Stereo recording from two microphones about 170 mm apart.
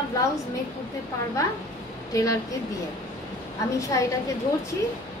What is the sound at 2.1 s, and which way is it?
Speech, 20° left (ahead or behind).